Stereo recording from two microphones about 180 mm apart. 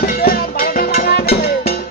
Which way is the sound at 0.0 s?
50° left (ahead or behind).